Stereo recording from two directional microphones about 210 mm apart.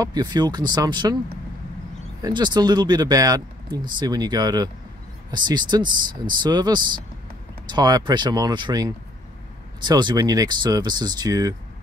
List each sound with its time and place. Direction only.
0.0 s speech: 20° right (ahead or behind)
2.2 s speech: 20° right (ahead or behind)